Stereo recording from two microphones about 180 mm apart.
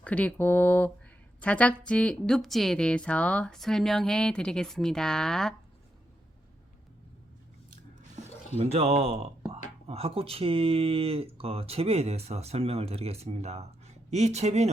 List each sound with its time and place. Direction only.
0.0 s a woman's voice: 5° left (ahead or behind)
8.5 s speech: 35° right (ahead or behind)